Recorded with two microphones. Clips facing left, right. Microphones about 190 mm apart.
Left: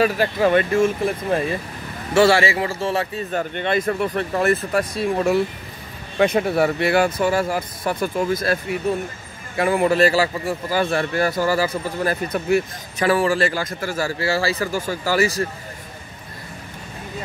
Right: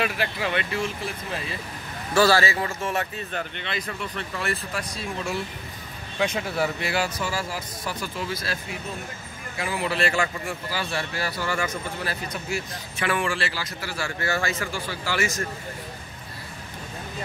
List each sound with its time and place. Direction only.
0.0 s a man's voice: 40° left (ahead or behind)
2.1 s a man's voice: 25° left (ahead or behind)
12.0 s speech: 50° left (ahead or behind)
13.0 s a man's voice: 35° left (ahead or behind)
14.2 s speech: 30° left (ahead or behind)